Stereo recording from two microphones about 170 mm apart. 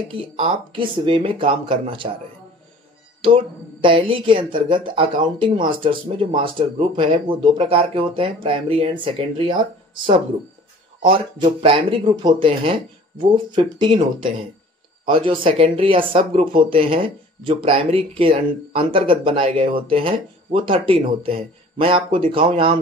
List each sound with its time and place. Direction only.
0.1 s a woman's voice: 30° right (ahead or behind)
3.8 s a woman's voice: 30° right (ahead or behind)
11.0 s a woman's voice: 25° right (ahead or behind)